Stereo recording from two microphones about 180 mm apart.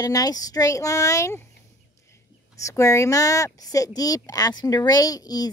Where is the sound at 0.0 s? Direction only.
20° left (ahead or behind).